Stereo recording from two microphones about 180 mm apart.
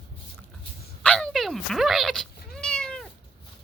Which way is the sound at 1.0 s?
5° left (ahead or behind).